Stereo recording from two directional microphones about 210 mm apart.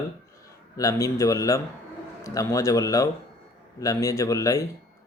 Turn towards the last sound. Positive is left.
turn(degrees=15)  # may be behind; listen again after turning